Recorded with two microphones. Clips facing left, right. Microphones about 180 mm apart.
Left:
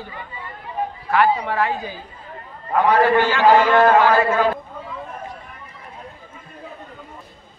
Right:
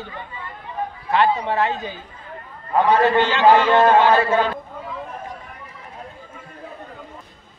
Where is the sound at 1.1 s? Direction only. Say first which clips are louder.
Even; 25° right (ahead or behind).